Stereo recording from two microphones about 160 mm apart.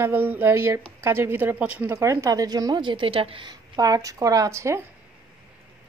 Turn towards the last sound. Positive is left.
turn(degrees=-20)  # may be behind; listen again after turning